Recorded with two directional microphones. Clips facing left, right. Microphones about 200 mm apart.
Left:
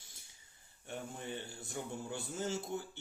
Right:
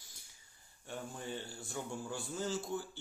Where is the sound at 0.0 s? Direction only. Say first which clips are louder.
Even; 25° left (ahead or behind).